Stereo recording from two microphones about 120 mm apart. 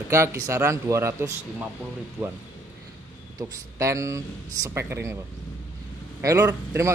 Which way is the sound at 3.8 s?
25° right (ahead or behind).